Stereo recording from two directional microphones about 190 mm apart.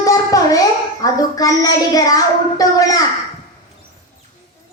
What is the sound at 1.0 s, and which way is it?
A child's voice, 20° left (ahead or behind).